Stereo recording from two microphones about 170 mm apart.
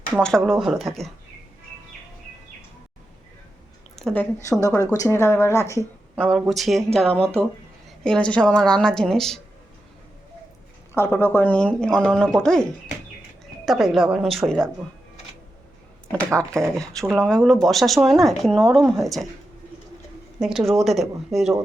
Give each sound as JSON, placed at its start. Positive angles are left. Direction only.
{"t": 0.2, "sound": "speech", "side_deg": 5}
{"t": 3.9, "sound": "a woman's voice", "side_deg": 5}
{"t": 4.9, "sound": "a woman's voice", "side_deg": 20}
{"t": 6.1, "sound": "speech", "side_deg": 0}
{"t": 10.9, "sound": "speech", "side_deg": 15}
{"t": 13.7, "sound": "speech", "side_deg": 0}
{"t": 16.5, "sound": "speech", "side_deg": 5}
{"t": 20.4, "sound": "speech", "side_deg": 0}